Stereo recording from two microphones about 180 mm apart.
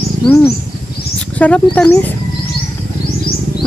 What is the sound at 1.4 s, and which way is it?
Speech, 5° left (ahead or behind).